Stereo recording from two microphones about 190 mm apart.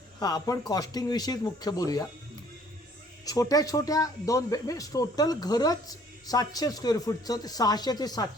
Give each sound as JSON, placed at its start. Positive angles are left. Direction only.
{"t": 0.2, "sound": "speech", "side_deg": 20}
{"t": 3.2, "sound": "speech", "side_deg": 20}